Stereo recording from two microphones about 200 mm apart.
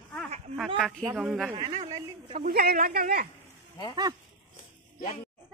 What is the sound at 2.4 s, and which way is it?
Speech, 50° right (ahead or behind).